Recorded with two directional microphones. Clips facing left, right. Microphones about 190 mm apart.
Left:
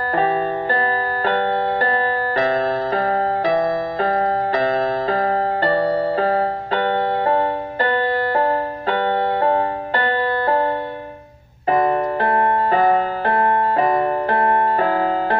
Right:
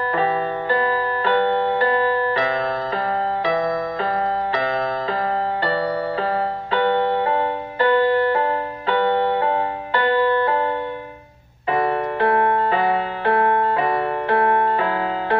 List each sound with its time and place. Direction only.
0.1 s music: 45° left (ahead or behind)
11.7 s music: 40° left (ahead or behind)